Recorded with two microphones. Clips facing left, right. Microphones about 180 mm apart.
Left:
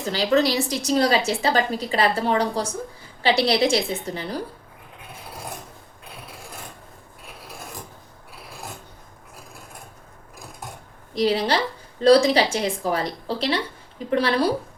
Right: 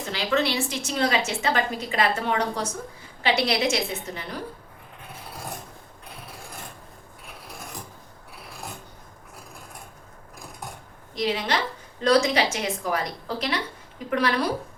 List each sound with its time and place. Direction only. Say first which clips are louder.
0.0 s a woman's voice: left 5 dB; 35° left (ahead or behind)
11.1 s a woman's voice: left 5 dB; 35° left (ahead or behind)